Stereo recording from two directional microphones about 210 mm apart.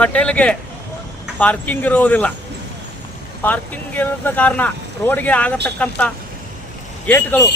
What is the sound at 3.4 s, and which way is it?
Speech, 5° left (ahead or behind).